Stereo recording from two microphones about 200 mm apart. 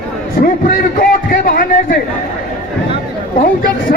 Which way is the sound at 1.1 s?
45° left (ahead or behind).